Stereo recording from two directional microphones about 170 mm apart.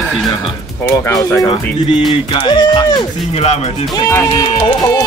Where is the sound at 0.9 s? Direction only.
20° left (ahead or behind).